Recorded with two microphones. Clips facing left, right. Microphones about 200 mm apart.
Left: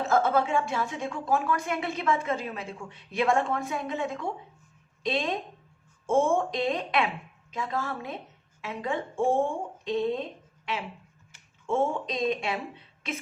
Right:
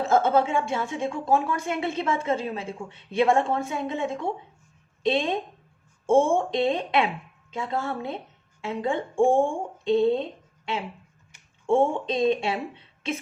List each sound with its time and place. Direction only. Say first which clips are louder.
0.1 s speech: right 3 dB; 25° right (ahead or behind)
11.6 s speech: right 5 dB; 30° right (ahead or behind)